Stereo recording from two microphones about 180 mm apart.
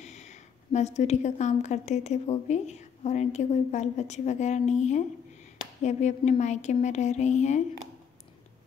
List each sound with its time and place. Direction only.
0.0 s a woman's voice: 40° left (ahead or behind)